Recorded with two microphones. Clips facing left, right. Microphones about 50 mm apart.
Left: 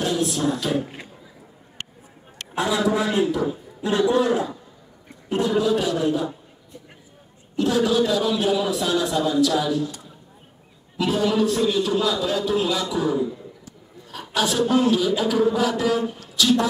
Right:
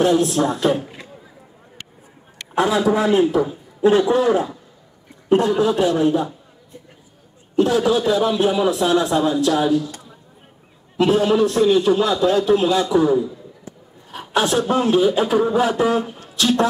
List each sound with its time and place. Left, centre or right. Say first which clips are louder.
0.0 s a man's voice: right 6 dB; right
2.7 s a man's voice: right 4 dB; centre
5.6 s a man's voice: right 4 dB; right
7.5 s a man's voice: right 3 dB; right